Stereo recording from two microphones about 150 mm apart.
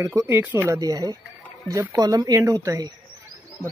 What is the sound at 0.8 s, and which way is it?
Speech, 25° right (ahead or behind).